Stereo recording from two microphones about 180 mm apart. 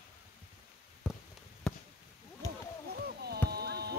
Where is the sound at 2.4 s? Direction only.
20° left (ahead or behind).